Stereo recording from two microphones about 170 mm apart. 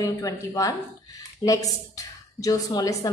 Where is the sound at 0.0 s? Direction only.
20° left (ahead or behind).